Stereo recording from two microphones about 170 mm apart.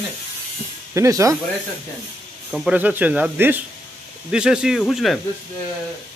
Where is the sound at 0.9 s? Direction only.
20° right (ahead or behind).